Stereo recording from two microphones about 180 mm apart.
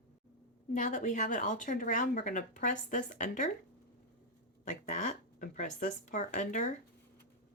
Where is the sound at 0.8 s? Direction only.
45° left (ahead or behind).